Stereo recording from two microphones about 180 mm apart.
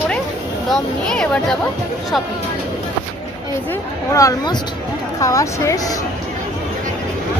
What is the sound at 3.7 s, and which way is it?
Speech, 15° left (ahead or behind).